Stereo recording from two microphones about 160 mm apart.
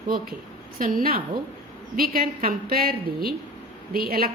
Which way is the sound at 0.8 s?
60° right (ahead or behind).